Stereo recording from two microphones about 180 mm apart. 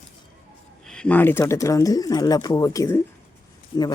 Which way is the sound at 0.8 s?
5° left (ahead or behind).